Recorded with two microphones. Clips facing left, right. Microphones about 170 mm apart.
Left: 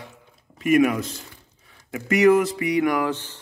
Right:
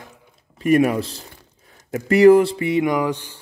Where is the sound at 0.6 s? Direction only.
35° right (ahead or behind).